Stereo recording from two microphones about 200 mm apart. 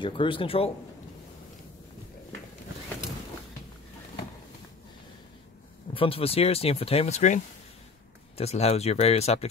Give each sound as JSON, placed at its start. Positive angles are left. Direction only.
{"t": 0.0, "sound": "speech", "side_deg": 25}
{"t": 5.9, "sound": "speech", "side_deg": 25}